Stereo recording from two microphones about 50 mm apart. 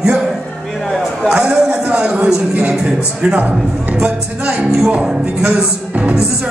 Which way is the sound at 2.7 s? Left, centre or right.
Centre.